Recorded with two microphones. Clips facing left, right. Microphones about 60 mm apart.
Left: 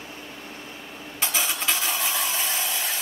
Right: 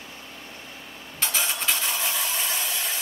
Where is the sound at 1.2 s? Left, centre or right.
Centre.